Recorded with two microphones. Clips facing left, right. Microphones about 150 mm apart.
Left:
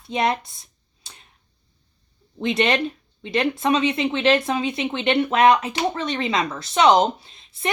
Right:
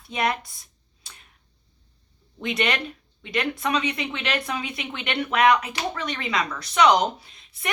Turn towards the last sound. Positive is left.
turn(degrees=25)  # may be behind; listen again after turning